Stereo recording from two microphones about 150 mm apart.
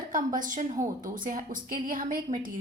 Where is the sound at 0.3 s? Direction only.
60° right (ahead or behind).